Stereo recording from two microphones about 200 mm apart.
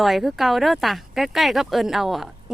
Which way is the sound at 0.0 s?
Centre (ahead or behind).